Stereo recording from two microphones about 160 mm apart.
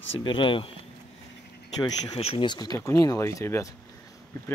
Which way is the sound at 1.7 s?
25° left (ahead or behind).